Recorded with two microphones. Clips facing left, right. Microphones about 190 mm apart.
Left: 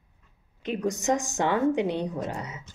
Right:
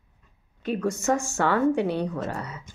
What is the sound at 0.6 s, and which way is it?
Speech, 20° left (ahead or behind).